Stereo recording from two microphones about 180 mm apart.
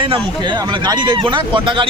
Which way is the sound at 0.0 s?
25° right (ahead or behind).